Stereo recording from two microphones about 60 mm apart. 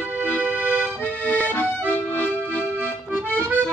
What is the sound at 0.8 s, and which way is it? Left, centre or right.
Accordion, left.